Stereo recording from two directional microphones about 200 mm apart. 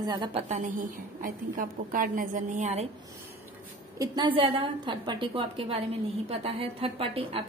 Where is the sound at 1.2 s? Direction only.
45° right (ahead or behind).